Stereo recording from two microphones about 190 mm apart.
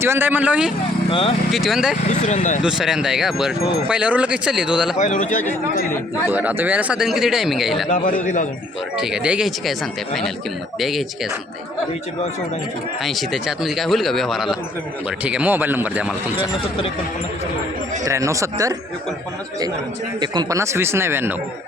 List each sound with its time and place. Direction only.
0.0 s a man's voice: 10° right (ahead or behind)
1.1 s speech: 30° left (ahead or behind)
1.5 s speech: centre (ahead or behind)
2.0 s speech: 40° left (ahead or behind)
2.6 s speech: 5° right (ahead or behind)
4.9 s speech: 40° left (ahead or behind)
6.3 s speech: 10° right (ahead or behind)
7.9 s a man's voice: 45° left (ahead or behind)
9.0 s speech: 5° right (ahead or behind)
10.8 s speech: centre (ahead or behind)
13.0 s a man's voice: centre (ahead or behind)
18.0 s a man's voice: 15° right (ahead or behind)
20.1 s a man's voice: 25° right (ahead or behind)